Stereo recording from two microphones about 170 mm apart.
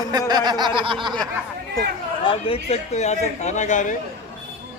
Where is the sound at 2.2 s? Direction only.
30° left (ahead or behind).